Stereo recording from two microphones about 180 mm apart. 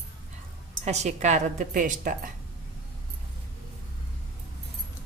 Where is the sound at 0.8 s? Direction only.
40° right (ahead or behind).